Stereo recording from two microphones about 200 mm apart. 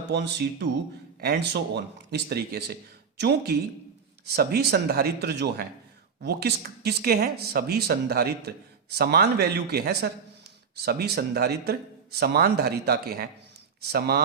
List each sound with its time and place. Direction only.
0.1 s speech: 60° right (ahead or behind)